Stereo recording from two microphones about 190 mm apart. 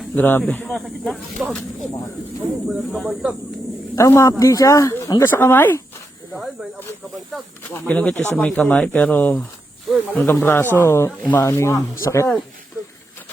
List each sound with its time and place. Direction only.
0.2 s speech: 10° left (ahead or behind)
2.6 s speech: centre (ahead or behind)
3.9 s speech: 15° left (ahead or behind)
7.7 s speech: 5° left (ahead or behind)